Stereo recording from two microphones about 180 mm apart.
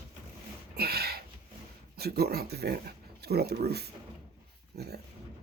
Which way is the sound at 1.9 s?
60° right (ahead or behind).